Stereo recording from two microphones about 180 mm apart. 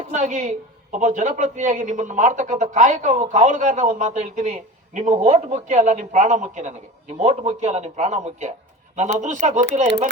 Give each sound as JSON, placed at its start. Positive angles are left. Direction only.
{"t": 0.1, "sound": "a woman's voice", "side_deg": -40}